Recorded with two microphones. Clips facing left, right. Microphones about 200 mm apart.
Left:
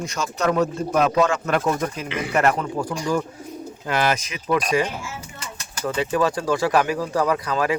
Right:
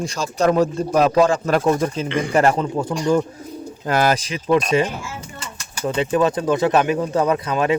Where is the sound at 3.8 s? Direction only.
40° right (ahead or behind).